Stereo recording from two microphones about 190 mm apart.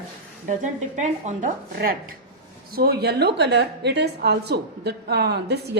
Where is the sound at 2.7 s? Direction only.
55° right (ahead or behind).